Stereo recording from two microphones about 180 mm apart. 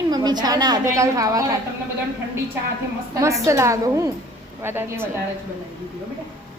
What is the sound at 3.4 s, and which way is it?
A woman's voice, 15° right (ahead or behind).